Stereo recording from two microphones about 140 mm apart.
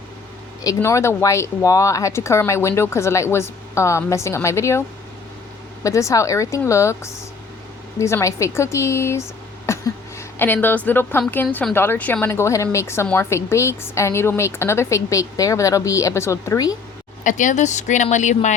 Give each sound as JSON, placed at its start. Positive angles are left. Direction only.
{"t": 0.6, "sound": "speech", "side_deg": 25}
{"t": 5.8, "sound": "a woman's voice", "side_deg": 20}
{"t": 17.2, "sound": "speech", "side_deg": 65}